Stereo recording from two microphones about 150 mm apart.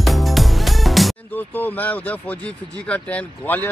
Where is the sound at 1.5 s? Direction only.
10° left (ahead or behind).